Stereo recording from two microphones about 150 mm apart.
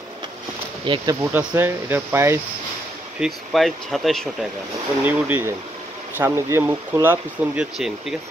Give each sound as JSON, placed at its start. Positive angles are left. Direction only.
{"t": 0.8, "sound": "speech", "side_deg": -35}
{"t": 1.3, "sound": "speech", "side_deg": -10}
{"t": 3.2, "sound": "speech", "side_deg": 0}
{"t": 5.0, "sound": "speech", "side_deg": -10}